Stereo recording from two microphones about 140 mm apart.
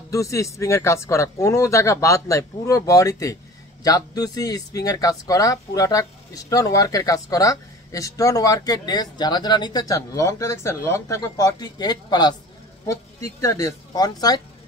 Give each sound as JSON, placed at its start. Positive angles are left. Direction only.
{"t": 0.1, "sound": "speech", "side_deg": 20}